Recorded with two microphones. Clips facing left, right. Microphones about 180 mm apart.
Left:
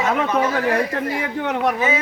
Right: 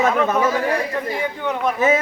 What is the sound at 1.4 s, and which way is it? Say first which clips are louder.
Speech: left 2 dB; 70° left (ahead or behind).